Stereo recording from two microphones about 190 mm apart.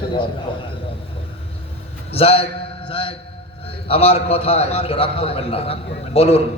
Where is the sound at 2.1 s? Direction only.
30° left (ahead or behind).